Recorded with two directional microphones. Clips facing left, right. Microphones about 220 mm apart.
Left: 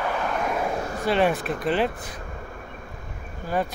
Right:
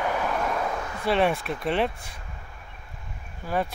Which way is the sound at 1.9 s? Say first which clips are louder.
Left 8 dB; 50° left (ahead or behind).